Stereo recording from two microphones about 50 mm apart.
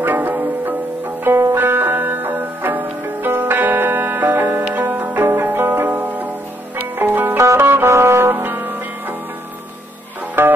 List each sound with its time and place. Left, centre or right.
0.0 s music: right
1.2 s music: right
5.2 s zither: right
7.0 s music: right
7.3 s music: right
7.9 s brass instrument: right
8.3 s music: right
10.4 s music: right